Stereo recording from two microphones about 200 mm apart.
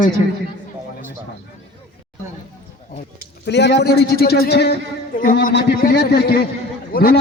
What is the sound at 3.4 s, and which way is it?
A man's voice, 60° left (ahead or behind).